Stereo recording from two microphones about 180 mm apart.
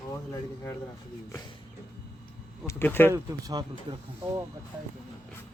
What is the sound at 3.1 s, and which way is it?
Speech, 20° right (ahead or behind).